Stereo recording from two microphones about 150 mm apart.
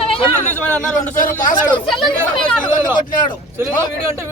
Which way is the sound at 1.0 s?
60° left (ahead or behind).